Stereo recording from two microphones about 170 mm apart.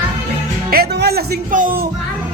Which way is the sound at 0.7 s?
65° right (ahead or behind).